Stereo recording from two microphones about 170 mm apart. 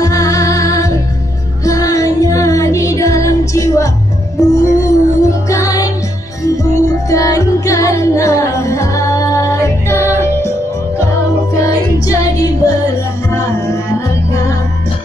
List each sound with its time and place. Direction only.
0.0 s music: 20° left (ahead or behind)
11.6 s music: 20° left (ahead or behind)